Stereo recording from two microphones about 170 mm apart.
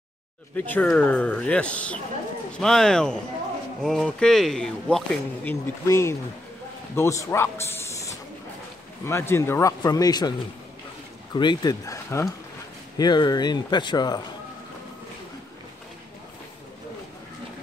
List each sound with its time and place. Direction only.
0.6 s speech: 10° left (ahead or behind)
11.3 s speech: 25° left (ahead or behind)